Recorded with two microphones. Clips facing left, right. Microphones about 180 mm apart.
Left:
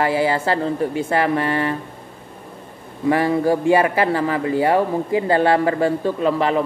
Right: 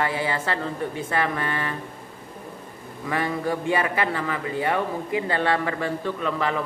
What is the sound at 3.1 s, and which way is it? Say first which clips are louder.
Speech: left 8 dB; 30° left (ahead or behind).